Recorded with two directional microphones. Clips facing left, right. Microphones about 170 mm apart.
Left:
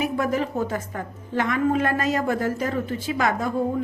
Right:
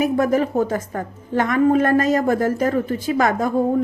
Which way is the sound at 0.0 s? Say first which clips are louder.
Right 6 dB; 45° right (ahead or behind).